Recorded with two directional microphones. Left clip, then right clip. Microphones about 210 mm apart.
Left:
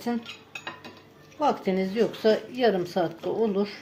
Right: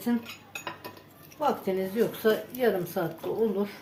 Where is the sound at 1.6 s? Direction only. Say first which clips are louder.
Left 2 dB; 45° left (ahead or behind).